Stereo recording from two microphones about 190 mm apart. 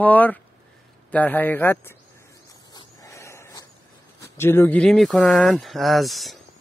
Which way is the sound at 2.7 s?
15° left (ahead or behind).